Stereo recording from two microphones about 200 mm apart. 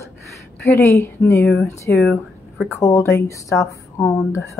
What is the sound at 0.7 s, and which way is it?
A woman's voice, 15° left (ahead or behind).